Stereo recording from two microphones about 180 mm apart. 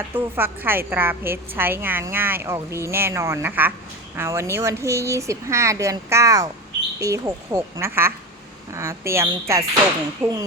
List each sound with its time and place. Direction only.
0.1 s a woman's voice: 10° right (ahead or behind)